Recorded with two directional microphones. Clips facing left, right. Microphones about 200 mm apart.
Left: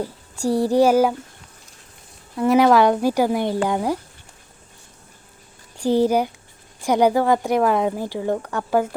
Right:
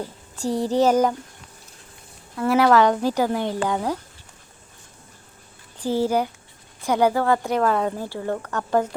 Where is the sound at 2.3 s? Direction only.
20° left (ahead or behind).